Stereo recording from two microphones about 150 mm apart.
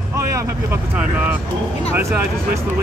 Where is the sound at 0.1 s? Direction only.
20° right (ahead or behind).